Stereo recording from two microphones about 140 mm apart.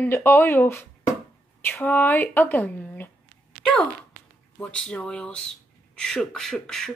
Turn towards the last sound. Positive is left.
turn(degrees=5)  # may be behind; listen again after turning